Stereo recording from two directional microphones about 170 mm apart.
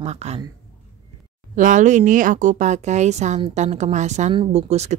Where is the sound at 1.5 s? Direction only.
50° right (ahead or behind).